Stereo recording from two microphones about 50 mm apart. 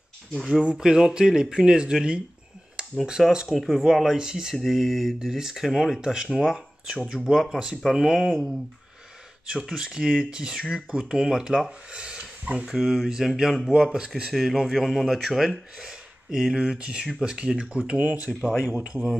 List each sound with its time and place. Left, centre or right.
0.5 s speech: centre
3.5 s speech: centre
9.6 s speech: centre
12.6 s speech: centre
14.3 s speech: centre; by 18.3 s right